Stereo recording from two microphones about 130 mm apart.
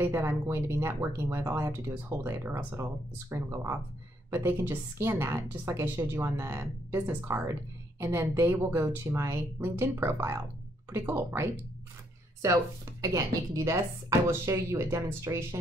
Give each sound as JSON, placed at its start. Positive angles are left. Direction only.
{"t": 0.0, "sound": "speech", "side_deg": -20}